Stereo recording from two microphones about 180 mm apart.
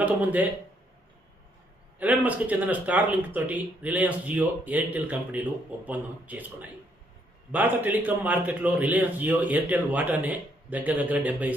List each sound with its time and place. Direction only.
0.0 s a man's voice: 10° right (ahead or behind)
2.0 s a man's voice: 10° right (ahead or behind)